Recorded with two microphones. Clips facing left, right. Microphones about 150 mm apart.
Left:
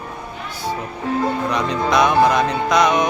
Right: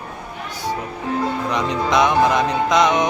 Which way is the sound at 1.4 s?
20° right (ahead or behind).